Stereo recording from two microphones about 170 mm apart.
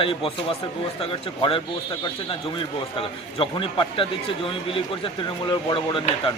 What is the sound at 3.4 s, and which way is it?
A man's voice, 30° left (ahead or behind).